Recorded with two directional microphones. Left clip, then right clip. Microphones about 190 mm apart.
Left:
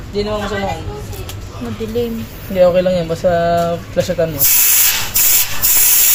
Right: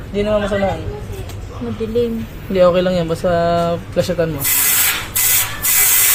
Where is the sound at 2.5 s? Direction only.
25° right (ahead or behind).